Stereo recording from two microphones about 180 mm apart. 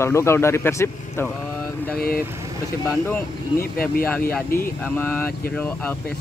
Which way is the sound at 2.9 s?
10° left (ahead or behind).